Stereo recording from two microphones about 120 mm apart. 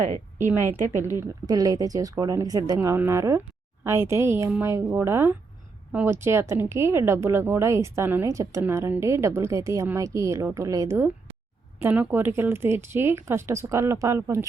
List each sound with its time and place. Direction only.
0.3 s speech: 20° right (ahead or behind)
1.5 s speech: 30° right (ahead or behind)